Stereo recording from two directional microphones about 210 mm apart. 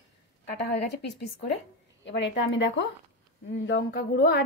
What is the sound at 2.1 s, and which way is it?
A woman's voice, 60° left (ahead or behind).